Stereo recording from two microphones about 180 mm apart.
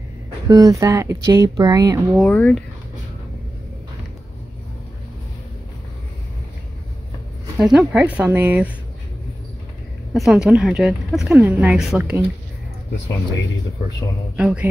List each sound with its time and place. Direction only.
0.5 s speech: 20° right (ahead or behind)
2.1 s speech: 10° left (ahead or behind)
7.5 s speech: 5° right (ahead or behind)
10.1 s speech: centre (ahead or behind)
14.3 s speech: 5° right (ahead or behind)